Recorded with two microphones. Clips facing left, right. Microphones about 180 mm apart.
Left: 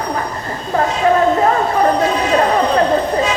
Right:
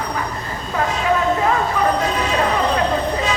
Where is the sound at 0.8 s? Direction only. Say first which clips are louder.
Left 5 dB; 40° left (ahead or behind).